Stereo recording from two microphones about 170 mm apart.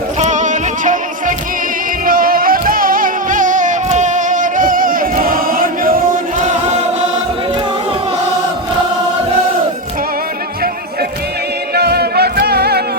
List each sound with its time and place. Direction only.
0.2 s music: 45° right (ahead or behind)
2.0 s music: 55° right (ahead or behind)
11.7 s music: 70° right (ahead or behind)